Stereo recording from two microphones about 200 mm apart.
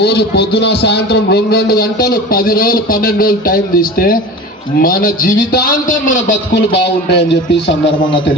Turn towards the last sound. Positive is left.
turn(degrees=60)  # may be behind; listen again after turning